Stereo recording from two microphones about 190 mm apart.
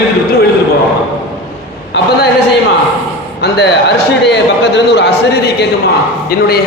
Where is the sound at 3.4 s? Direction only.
60° left (ahead or behind).